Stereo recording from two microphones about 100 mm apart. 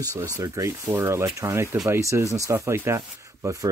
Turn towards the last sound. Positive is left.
turn(degrees=-30)  # may be behind; listen again after turning